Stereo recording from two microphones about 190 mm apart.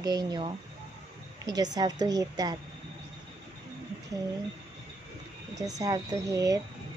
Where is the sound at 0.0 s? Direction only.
20° right (ahead or behind).